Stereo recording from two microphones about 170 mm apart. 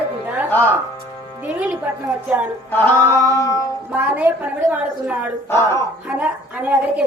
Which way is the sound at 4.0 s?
10° right (ahead or behind).